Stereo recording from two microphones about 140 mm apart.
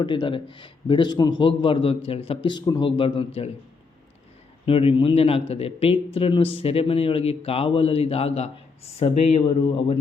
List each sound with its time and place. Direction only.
0.0 s a man's voice: 35° left (ahead or behind)
4.6 s speech: 40° left (ahead or behind)